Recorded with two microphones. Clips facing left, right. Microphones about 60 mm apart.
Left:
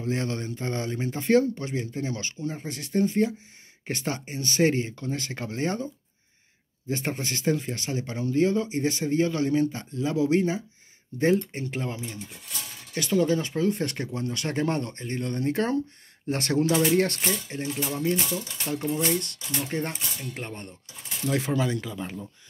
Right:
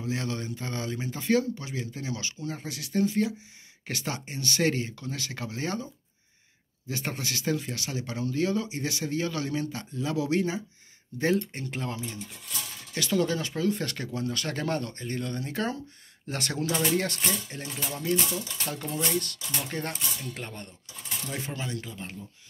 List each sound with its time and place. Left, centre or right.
0.0 s speech: left
6.9 s speech: left
17.3 s speech: left
21.3 s speech: left